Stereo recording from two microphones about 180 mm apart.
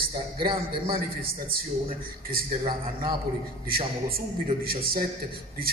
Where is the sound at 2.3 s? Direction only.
50° right (ahead or behind).